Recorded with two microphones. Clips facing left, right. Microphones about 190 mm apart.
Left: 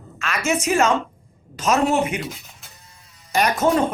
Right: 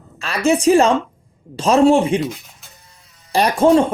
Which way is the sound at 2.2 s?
Centre (ahead or behind).